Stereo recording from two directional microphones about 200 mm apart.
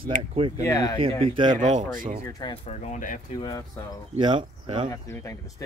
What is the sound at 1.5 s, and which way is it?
Speech, 40° right (ahead or behind).